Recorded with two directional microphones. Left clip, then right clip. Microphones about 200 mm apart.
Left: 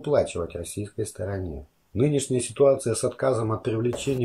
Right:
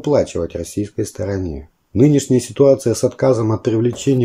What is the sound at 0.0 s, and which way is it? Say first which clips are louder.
Speech: right 7 dB; 30° right (ahead or behind).